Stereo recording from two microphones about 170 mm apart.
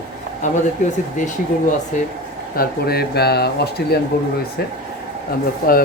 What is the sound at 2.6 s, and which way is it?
Speech, 65° left (ahead or behind).